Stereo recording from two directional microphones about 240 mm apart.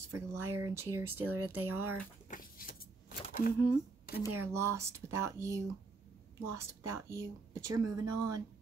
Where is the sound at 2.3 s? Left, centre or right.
Left.